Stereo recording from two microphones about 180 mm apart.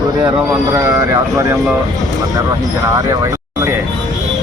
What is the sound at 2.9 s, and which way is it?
Speech, 20° right (ahead or behind).